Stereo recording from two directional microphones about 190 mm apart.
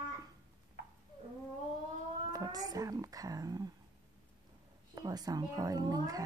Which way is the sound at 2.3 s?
20° right (ahead or behind).